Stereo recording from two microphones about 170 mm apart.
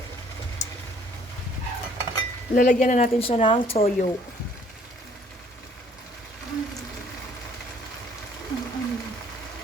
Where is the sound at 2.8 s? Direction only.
45° left (ahead or behind).